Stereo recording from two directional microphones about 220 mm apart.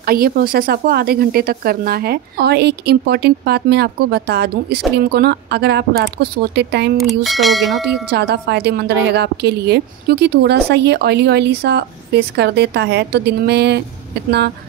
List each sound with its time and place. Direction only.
0.0 s a woman's voice: 40° right (ahead or behind)
7.2 s speech: centre (ahead or behind)
8.1 s a woman's voice: 50° right (ahead or behind)